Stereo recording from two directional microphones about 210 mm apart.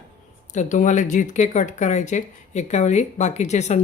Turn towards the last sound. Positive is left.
turn(degrees=35)  # may be behind; listen again after turning